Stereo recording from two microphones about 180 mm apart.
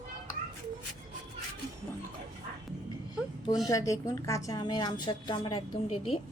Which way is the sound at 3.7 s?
20° left (ahead or behind).